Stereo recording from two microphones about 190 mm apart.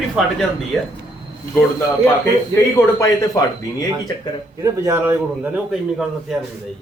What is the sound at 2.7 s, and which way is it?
Speech, 15° left (ahead or behind).